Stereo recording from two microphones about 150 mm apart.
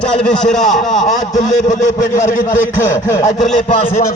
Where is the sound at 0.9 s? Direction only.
55° left (ahead or behind).